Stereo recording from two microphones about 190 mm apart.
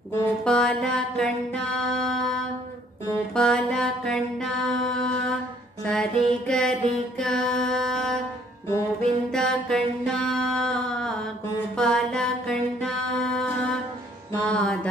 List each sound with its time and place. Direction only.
0.2 s music: 5° left (ahead or behind)
3.3 s music: 5° left (ahead or behind)
5.9 s mantra: 5° left (ahead or behind)
9.3 s mantra: 5° left (ahead or behind)
14.5 s music: 5° left (ahead or behind)